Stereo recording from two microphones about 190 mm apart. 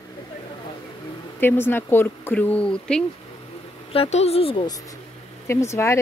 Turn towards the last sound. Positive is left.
turn(degrees=15)  # may be behind; listen again after turning